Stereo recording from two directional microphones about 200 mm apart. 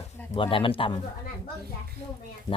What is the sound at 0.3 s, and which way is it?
Speech, 25° left (ahead or behind).